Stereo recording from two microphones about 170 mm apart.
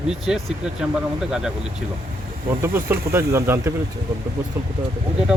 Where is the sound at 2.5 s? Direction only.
15° right (ahead or behind).